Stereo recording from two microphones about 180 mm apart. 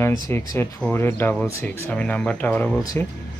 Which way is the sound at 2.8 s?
20° left (ahead or behind).